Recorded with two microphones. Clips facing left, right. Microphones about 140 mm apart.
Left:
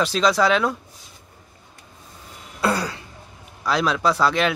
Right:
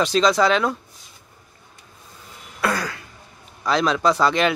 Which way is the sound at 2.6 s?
30° left (ahead or behind).